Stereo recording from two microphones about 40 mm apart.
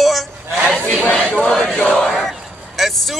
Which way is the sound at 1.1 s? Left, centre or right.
Centre.